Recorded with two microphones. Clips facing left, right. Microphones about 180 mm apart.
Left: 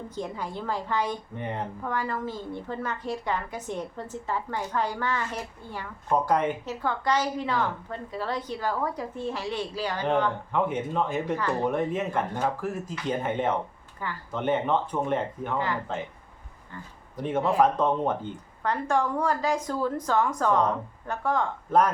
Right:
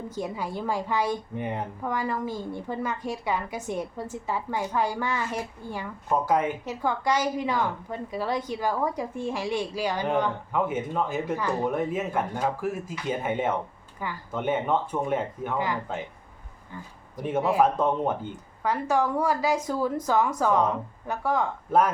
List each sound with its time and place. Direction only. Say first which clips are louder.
0.1 s a woman's voice: right 2 dB; 10° right (ahead or behind)
17.2 s a woman's voice: even; 10° right (ahead or behind)